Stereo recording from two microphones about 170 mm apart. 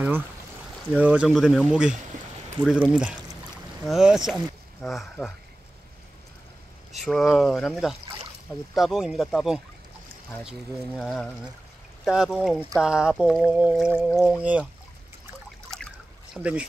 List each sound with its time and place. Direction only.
0.9 s speech: 5° right (ahead or behind)
7.0 s speech: centre (ahead or behind)
11.0 s speech: centre (ahead or behind)
16.4 s speech: 5° left (ahead or behind)